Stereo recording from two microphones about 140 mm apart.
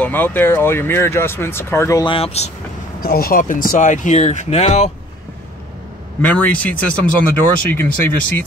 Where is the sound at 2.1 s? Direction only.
40° left (ahead or behind).